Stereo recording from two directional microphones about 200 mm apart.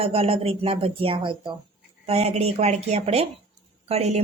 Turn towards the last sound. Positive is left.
turn(degrees=-30)  # may be behind; listen again after turning